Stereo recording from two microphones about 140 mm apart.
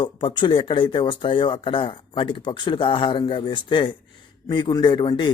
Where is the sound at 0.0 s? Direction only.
35° left (ahead or behind).